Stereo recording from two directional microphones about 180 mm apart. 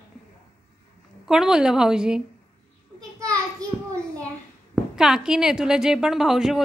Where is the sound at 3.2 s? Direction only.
20° right (ahead or behind).